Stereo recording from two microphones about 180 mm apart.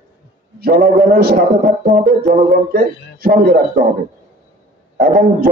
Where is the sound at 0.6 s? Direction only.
55° right (ahead or behind).